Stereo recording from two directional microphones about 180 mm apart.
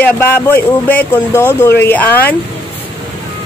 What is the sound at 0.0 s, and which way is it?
Speech, 10° left (ahead or behind).